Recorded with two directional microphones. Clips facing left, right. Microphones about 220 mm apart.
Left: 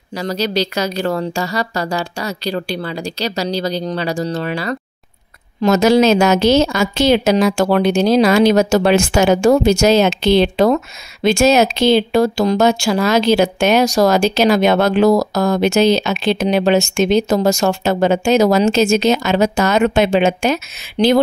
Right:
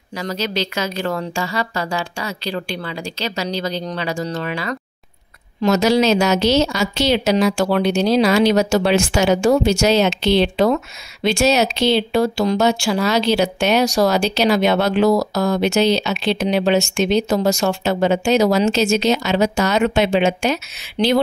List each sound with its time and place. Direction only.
0.2 s a woman's voice: 35° left (ahead or behind)
5.6 s speech: 50° left (ahead or behind)
21.0 s a woman's voice: 35° left (ahead or behind)